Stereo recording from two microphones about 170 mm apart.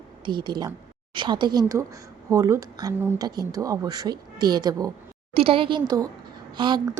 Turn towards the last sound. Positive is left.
turn(degrees=-25)  # may be behind; listen again after turning